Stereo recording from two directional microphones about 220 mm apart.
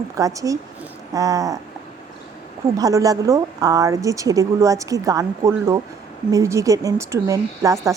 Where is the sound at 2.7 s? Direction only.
15° right (ahead or behind).